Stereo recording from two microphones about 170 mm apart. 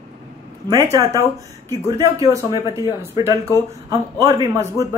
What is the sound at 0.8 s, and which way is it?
A woman's voice, 20° right (ahead or behind).